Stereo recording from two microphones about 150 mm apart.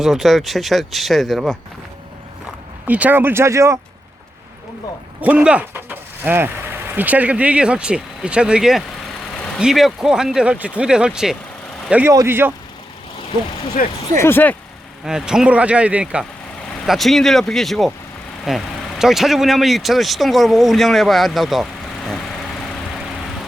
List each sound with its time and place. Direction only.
0.0 s speech: centre (ahead or behind)
2.8 s speech: 10° right (ahead or behind)
5.2 s speech: 10° right (ahead or behind)
13.8 s speech: 65° left (ahead or behind)
14.2 s speech: 15° left (ahead or behind)
15.0 s speech: 5° right (ahead or behind)